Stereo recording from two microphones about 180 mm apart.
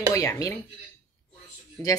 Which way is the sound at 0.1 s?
15° left (ahead or behind).